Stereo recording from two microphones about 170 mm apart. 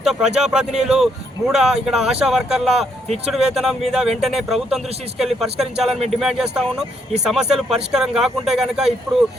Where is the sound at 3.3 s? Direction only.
Centre (ahead or behind).